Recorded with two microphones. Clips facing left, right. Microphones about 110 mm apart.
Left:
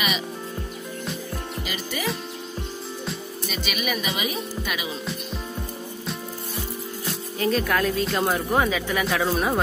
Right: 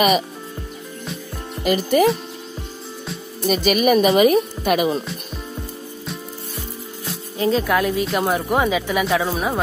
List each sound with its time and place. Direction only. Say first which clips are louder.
1.6 s speech: right 18 dB; 50° right (ahead or behind)
3.4 s speech: right 13 dB; 50° right (ahead or behind)
7.3 s speech: right 4 dB; 20° right (ahead or behind)
9.0 s speech: right 3 dB; centre (ahead or behind)